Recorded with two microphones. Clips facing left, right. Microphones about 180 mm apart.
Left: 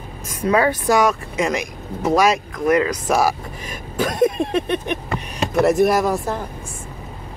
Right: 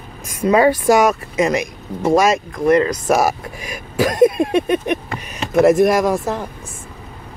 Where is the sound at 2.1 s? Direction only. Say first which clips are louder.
Right 2 dB; 45° right (ahead or behind).